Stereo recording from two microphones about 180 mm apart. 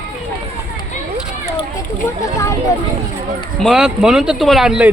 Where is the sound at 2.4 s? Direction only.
15° left (ahead or behind).